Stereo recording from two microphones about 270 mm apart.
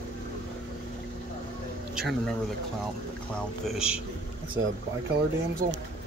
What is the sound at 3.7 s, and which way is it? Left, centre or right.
Speech, centre.